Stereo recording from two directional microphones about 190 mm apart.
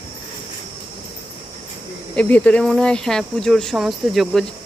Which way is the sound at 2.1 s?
5° left (ahead or behind).